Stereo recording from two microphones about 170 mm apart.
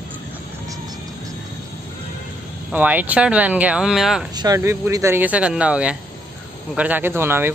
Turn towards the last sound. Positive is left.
turn(degrees=-15)  # may be behind; listen again after turning